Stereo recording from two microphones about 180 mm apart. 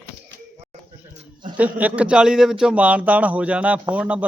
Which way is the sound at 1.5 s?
10° right (ahead or behind).